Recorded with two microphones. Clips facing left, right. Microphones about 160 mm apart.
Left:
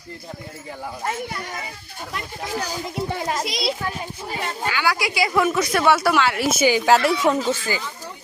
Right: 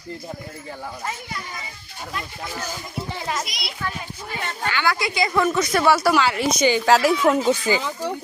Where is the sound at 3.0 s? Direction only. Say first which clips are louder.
Left 5 dB; 50° left (ahead or behind).